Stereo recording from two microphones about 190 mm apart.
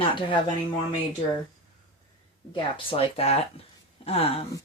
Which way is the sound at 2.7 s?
30° left (ahead or behind).